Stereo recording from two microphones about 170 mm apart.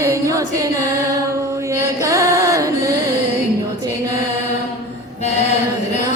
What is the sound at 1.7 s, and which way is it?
Music, 20° right (ahead or behind).